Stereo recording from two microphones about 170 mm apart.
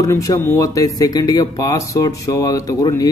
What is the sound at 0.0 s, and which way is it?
Speech, 20° left (ahead or behind).